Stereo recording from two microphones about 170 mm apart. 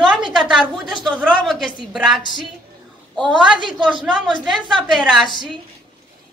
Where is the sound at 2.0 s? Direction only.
Centre (ahead or behind).